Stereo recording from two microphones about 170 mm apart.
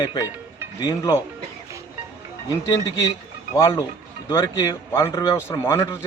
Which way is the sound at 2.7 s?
20° left (ahead or behind).